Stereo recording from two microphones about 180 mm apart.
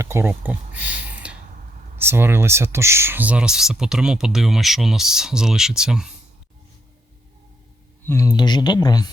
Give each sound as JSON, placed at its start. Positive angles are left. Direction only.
{"t": 0.0, "sound": "speech", "side_deg": -15}
{"t": 1.2, "sound": "a sound", "side_deg": -5}
{"t": 2.0, "sound": "speech", "side_deg": -10}
{"t": 8.0, "sound": "speech", "side_deg": 15}